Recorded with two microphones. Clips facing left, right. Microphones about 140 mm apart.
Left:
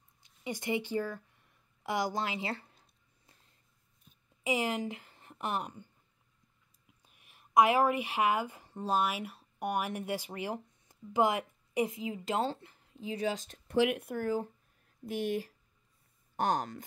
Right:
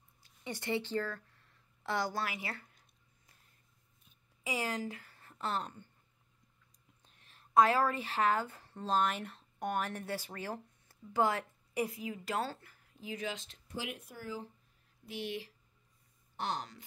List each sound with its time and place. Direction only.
0.2 s a sound: 15° left (ahead or behind); by 2.9 s 30° left (ahead or behind)
4.4 s a woman's voice: 20° left (ahead or behind)
7.0 s speech: 10° left (ahead or behind); by 13.6 s 40° left (ahead or behind)
13.7 s speech: 65° left (ahead or behind); by 16.8 s 50° left (ahead or behind)